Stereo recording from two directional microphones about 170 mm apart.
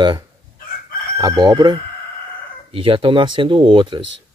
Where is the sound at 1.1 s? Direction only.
20° right (ahead or behind).